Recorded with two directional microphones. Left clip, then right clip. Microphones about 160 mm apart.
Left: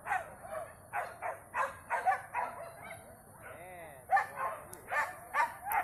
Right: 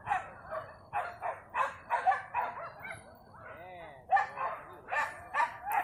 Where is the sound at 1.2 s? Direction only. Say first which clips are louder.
Right 2 dB; 35° right (ahead or behind).